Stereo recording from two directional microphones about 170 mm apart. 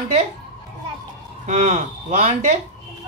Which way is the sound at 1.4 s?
45° right (ahead or behind).